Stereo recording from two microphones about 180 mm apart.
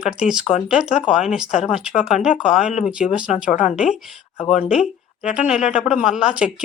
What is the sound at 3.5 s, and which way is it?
Speech, 45° left (ahead or behind).